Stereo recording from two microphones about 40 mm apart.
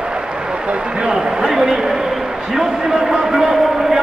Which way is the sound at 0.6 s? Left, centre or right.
Right.